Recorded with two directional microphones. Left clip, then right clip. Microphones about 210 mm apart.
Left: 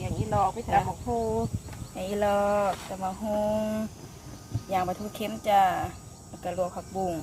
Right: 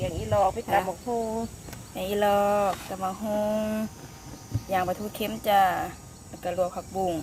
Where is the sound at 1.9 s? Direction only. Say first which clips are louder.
Right 2 dB; 15° right (ahead or behind).